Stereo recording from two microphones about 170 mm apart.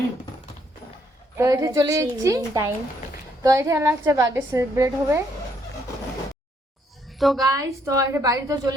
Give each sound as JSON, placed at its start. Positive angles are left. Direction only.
{"t": 1.4, "sound": "a woman's voice", "side_deg": -20}
{"t": 7.2, "sound": "a woman's voice", "side_deg": 0}
{"t": 7.4, "sound": "a woman's voice", "side_deg": -20}